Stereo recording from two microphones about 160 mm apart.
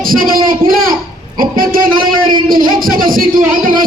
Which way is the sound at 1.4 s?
65° right (ahead or behind).